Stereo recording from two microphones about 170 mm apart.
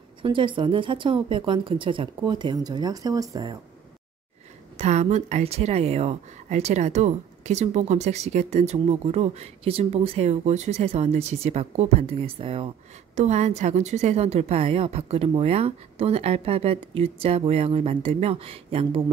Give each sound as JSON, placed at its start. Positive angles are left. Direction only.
{"t": 0.2, "sound": "speech", "side_deg": -30}
{"t": 4.7, "sound": "speech", "side_deg": -40}